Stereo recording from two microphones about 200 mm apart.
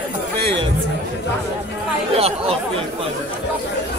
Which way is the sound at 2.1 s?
30° right (ahead or behind).